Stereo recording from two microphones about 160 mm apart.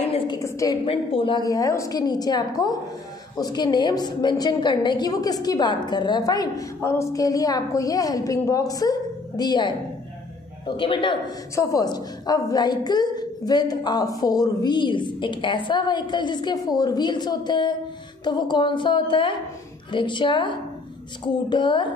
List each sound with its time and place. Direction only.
0.1 s a sound: 35° left (ahead or behind)
0.4 s a woman's voice: 20° left (ahead or behind)
0.8 s a woman's voice: 35° left (ahead or behind)
10.8 s a woman's voice: 30° left (ahead or behind)